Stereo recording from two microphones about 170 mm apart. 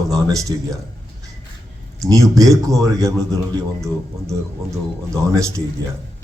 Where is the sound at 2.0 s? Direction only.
20° right (ahead or behind).